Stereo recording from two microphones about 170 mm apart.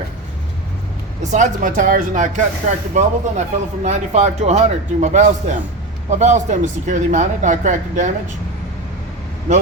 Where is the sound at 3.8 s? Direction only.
40° right (ahead or behind).